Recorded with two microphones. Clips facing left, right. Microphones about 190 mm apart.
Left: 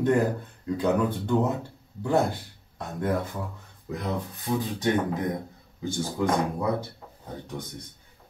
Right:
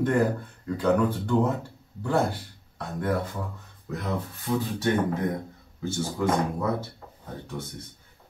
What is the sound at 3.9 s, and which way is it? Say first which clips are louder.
Speech: even; 15° left (ahead or behind).